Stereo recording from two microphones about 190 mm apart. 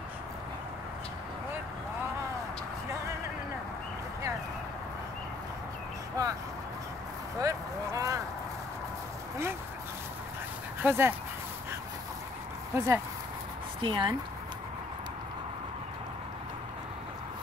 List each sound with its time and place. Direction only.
6.2 s vehicle: 20° right (ahead or behind)
7.3 s a sound: 15° right (ahead or behind)
10.8 s speech: 10° right (ahead or behind)
12.7 s speech: 15° right (ahead or behind)
13.7 s speech: 25° right (ahead or behind)